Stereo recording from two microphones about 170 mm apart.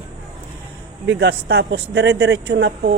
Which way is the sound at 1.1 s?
75° right (ahead or behind).